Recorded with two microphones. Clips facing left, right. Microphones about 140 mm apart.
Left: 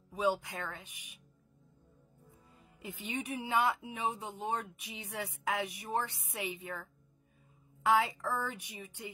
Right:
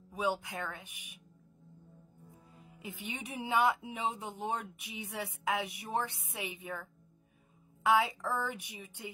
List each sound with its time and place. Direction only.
0.5 s speech: 15° right (ahead or behind)
2.8 s speech: 15° right (ahead or behind)
7.8 s speech: 15° right (ahead or behind)